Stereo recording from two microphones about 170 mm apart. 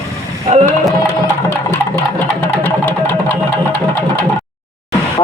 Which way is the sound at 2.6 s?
10° left (ahead or behind).